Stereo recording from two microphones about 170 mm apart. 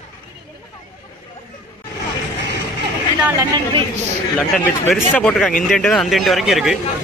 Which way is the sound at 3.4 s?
30° right (ahead or behind).